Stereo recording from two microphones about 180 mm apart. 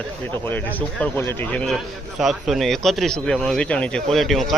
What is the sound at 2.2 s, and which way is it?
Speech, centre (ahead or behind).